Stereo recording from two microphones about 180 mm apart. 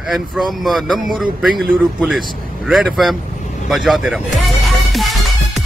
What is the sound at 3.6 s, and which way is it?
Music, centre (ahead or behind).